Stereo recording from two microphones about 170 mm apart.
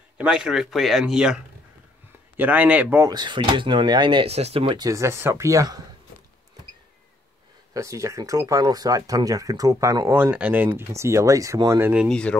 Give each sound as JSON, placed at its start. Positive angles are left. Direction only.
{"t": 0.2, "sound": "a man's voice", "side_deg": -5}
{"t": 3.1, "sound": "speech", "side_deg": -25}
{"t": 7.7, "sound": "speech", "side_deg": -20}
{"t": 12.1, "sound": "speech", "side_deg": 5}